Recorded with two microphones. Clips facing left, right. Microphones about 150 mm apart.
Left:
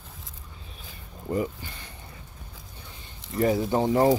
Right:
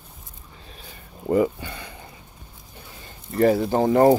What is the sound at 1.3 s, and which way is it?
Speech, 85° right.